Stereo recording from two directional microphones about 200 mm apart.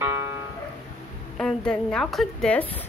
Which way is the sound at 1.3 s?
5° left (ahead or behind).